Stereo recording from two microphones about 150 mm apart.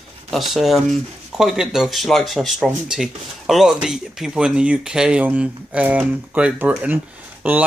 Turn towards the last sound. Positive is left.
turn(degrees=-10)  # may be behind; listen again after turning